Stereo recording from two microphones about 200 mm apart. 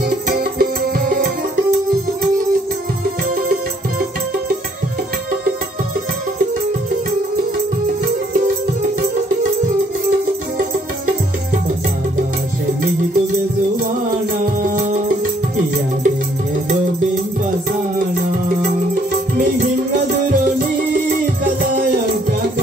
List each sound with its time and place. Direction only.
0.3 s music: 50° right (ahead or behind)